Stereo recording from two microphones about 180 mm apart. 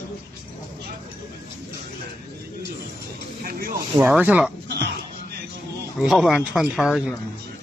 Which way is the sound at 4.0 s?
10° right (ahead or behind).